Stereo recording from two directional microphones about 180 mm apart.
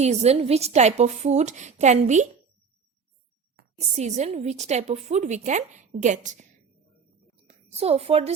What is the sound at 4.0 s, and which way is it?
A woman's voice, 40° right (ahead or behind).